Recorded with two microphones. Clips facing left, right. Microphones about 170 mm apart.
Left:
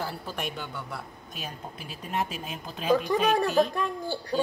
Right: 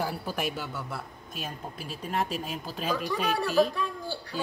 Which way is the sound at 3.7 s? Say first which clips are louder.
Left 3 dB; 50° left (ahead or behind).